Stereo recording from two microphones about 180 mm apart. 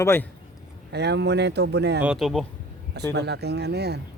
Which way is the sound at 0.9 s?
70° right (ahead or behind).